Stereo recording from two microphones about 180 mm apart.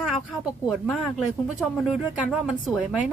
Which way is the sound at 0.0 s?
5° right (ahead or behind).